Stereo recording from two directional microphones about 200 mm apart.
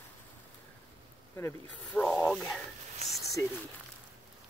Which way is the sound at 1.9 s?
Centre (ahead or behind).